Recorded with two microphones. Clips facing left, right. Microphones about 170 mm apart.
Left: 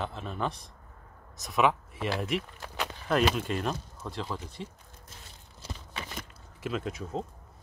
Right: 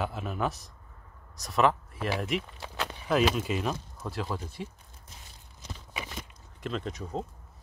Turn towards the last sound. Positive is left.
turn(degrees=5)  # may be behind; listen again after turning